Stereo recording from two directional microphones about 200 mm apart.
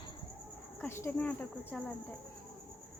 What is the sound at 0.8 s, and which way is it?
Speech, 10° left (ahead or behind).